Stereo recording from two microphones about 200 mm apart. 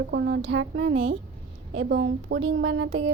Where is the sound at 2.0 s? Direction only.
70° right (ahead or behind).